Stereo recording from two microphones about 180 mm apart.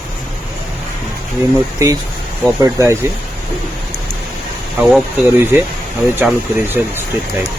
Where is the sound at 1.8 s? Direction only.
15° right (ahead or behind).